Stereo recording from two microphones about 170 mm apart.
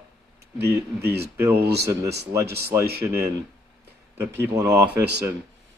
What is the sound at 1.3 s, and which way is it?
Speech, 15° right (ahead or behind).